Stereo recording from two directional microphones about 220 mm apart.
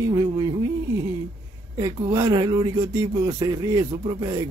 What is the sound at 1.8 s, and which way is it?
Speech, 15° right (ahead or behind).